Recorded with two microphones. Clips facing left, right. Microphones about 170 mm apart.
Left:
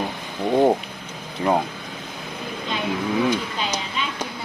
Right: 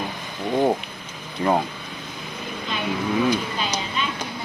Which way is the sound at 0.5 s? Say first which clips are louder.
Left 3 dB; 20° left (ahead or behind).